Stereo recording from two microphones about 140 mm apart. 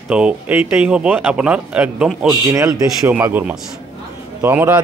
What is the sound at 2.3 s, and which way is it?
A man's voice, 20° right (ahead or behind).